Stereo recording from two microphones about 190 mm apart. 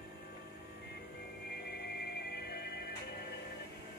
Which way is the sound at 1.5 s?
55° left (ahead or behind).